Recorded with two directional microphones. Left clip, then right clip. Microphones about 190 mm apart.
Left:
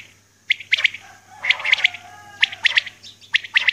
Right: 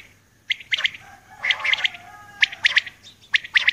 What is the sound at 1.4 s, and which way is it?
Bird, 35° right (ahead or behind).